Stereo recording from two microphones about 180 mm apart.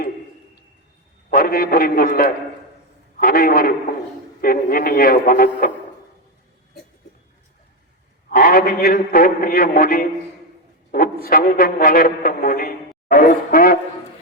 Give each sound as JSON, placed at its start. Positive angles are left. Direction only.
{"t": 1.3, "sound": "a man's voice", "side_deg": 55}
{"t": 8.3, "sound": "a man's voice", "side_deg": 50}
{"t": 10.9, "sound": "music", "side_deg": 55}